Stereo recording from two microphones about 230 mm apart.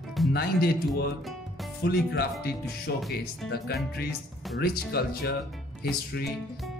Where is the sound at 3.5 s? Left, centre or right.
Left.